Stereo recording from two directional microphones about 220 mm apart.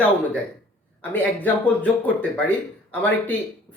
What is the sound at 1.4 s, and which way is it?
Speech, 5° left (ahead or behind).